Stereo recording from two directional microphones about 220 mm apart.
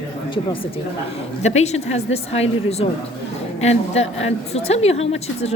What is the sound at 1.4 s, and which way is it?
A woman's voice, 30° left (ahead or behind).